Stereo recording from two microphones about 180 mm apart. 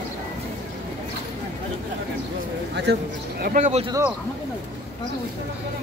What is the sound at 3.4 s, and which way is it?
Speech, 45° right (ahead or behind).